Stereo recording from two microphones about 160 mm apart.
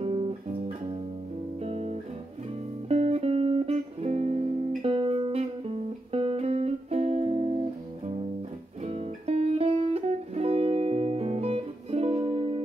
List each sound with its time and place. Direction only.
0.0 s music: 35° right (ahead or behind)
8.8 s music: 40° right (ahead or behind)